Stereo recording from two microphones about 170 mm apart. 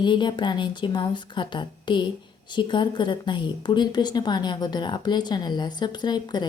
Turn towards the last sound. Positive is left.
turn(degrees=25)  # may be behind; listen again after turning